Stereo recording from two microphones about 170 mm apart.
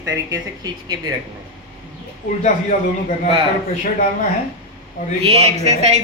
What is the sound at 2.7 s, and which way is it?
Speech, 55° left (ahead or behind).